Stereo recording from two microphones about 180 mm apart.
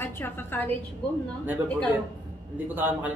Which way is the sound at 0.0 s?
10° left (ahead or behind).